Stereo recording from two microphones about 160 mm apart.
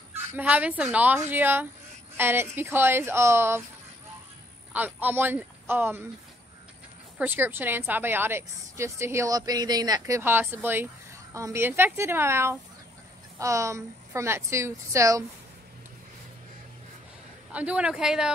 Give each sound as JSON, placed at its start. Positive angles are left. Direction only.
{"t": 0.1, "sound": "a woman's voice", "side_deg": -10}
{"t": 4.7, "sound": "a woman's voice", "side_deg": -10}
{"t": 7.2, "sound": "a woman's voice", "side_deg": -10}
{"t": 17.5, "sound": "speech", "side_deg": -10}